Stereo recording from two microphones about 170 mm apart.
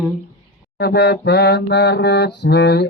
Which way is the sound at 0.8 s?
80° left.